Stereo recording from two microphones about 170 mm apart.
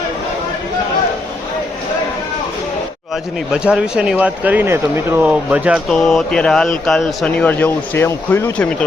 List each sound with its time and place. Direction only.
3.5 s speech: 5° right (ahead or behind)
5.9 s a man's voice: 5° left (ahead or behind)